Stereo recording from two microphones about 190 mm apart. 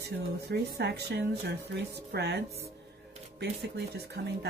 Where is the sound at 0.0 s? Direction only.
60° right (ahead or behind).